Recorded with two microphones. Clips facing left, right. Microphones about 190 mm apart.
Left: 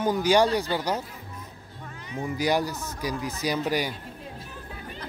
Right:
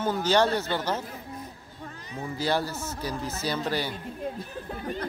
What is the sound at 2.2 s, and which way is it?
Speech, 15° left (ahead or behind).